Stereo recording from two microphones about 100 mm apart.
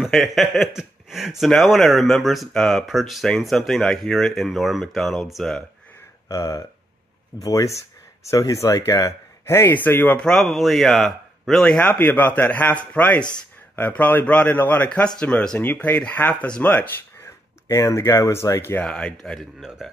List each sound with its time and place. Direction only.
0.0 s speech: centre (ahead or behind)
6.2 s speech: 35° left (ahead or behind); by 10.2 s 20° left (ahead or behind)
10.2 s speech: centre (ahead or behind)
11.8 s speech: 15° left (ahead or behind)
18.9 s speech: 10° left (ahead or behind)